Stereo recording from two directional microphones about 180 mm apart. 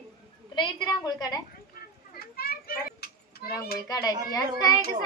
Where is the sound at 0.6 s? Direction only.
20° left (ahead or behind).